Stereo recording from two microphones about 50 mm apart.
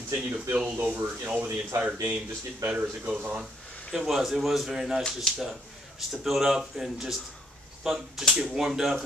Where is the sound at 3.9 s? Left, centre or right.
Centre.